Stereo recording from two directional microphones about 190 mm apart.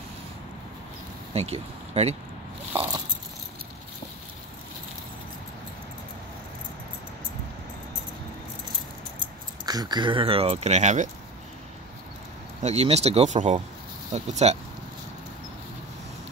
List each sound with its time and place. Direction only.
1.3 s speech: 30° right (ahead or behind)
2.7 s a sound: 15° right (ahead or behind)
9.2 s speech: 20° right (ahead or behind); by 11.1 s 35° right (ahead or behind)
12.6 s speech: 35° right (ahead or behind)